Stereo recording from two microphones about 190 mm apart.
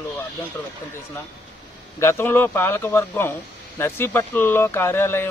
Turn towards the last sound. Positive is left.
turn(degrees=10)  # may be behind; listen again after turning